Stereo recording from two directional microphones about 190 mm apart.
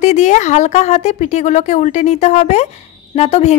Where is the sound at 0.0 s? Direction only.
35° left (ahead or behind).